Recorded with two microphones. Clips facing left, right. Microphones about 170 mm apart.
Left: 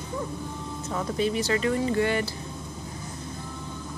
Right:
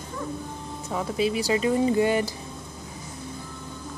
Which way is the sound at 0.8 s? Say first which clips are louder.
Right 1 dB; 15° right (ahead or behind).